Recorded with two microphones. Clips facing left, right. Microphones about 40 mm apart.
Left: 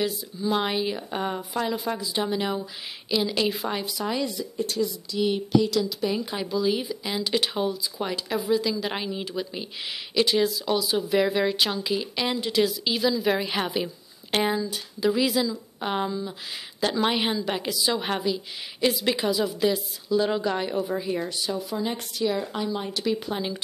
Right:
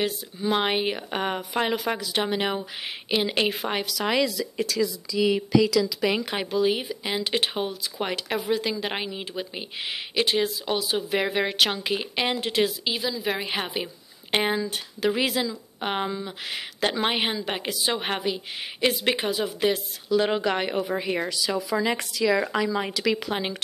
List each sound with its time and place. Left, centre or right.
0.0 s a woman's voice: right
2.0 s speech: right
2.2 s a woman's voice: right
3.8 s speech: right
6.0 s speech: right
6.5 s a woman's voice: right
8.8 s speech: right
11.5 s speech: right
12.8 s a woman's voice: centre
14.3 s speech: right
14.6 s speech: right
17.0 s speech: right
20.1 s a woman's voice: right